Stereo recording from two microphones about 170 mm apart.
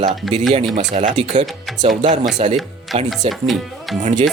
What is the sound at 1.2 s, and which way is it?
Speech, 45° right (ahead or behind).